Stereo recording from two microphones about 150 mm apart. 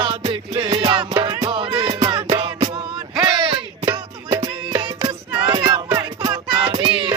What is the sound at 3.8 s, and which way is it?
Music, 20° right (ahead or behind).